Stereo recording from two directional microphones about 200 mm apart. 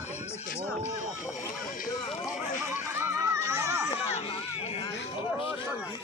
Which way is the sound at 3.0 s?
15° right (ahead or behind).